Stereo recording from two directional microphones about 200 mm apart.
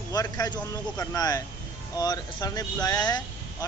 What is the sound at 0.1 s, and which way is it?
Speech, 20° left (ahead or behind).